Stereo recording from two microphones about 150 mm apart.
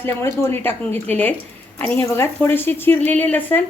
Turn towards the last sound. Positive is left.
turn(degrees=10)  # may be behind; listen again after turning